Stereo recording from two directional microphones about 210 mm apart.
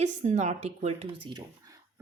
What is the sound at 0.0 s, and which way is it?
A woman's voice, 35° right (ahead or behind).